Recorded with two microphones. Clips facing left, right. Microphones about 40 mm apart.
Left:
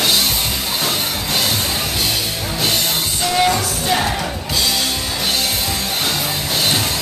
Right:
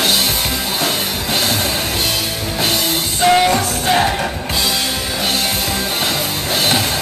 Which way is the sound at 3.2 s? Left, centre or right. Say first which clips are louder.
Right 5 dB; right.